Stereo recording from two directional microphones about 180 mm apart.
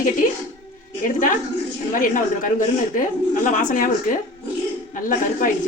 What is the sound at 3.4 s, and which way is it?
Speech, 45° left (ahead or behind).